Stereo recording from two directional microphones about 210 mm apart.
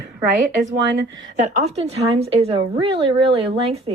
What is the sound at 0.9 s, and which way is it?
Speech, 65° right (ahead or behind).